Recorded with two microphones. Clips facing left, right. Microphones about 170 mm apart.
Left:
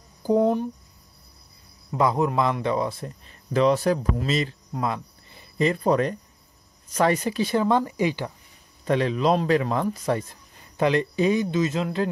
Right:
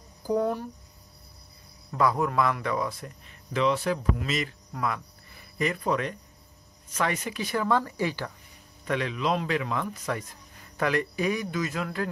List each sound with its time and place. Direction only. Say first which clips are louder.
0.2 s speech: left 6 dB; 25° left (ahead or behind)
1.9 s speech: left 3 dB; 20° left (ahead or behind)
8.8 s speech: left 6 dB; 35° left (ahead or behind)
10.8 s speech: left 5 dB; 25° left (ahead or behind)